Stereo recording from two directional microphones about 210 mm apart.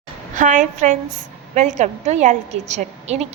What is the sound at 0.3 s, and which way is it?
A woman's voice, 40° right (ahead or behind).